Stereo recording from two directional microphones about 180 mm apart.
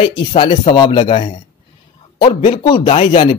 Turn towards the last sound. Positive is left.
turn(degrees=30)  # may be behind; listen again after turning